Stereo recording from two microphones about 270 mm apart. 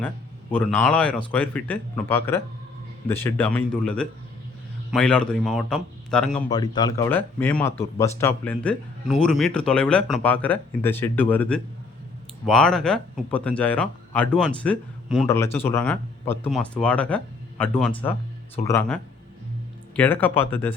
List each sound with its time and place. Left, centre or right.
0.5 s speech: centre
6.5 s speech: centre
20.0 s speech: centre